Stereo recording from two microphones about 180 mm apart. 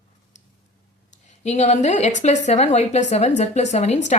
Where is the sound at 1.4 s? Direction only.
40° left (ahead or behind).